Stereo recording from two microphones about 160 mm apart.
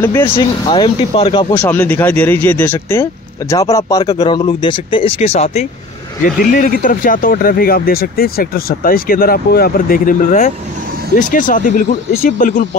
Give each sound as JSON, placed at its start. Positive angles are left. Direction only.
{"t": 0.0, "sound": "speech", "side_deg": 15}
{"t": 0.4, "sound": "speech", "side_deg": 30}
{"t": 1.5, "sound": "speech", "side_deg": 10}
{"t": 6.2, "sound": "speech", "side_deg": 60}